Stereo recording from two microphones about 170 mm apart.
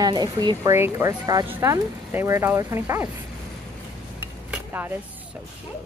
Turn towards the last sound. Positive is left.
turn(degrees=-10)  # may be behind; listen again after turning